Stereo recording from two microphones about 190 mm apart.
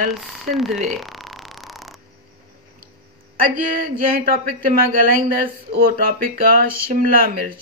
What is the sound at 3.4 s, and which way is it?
Speech, 50° right (ahead or behind).